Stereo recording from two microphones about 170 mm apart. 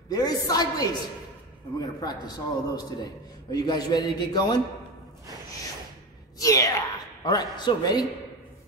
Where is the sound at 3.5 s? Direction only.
20° left (ahead or behind).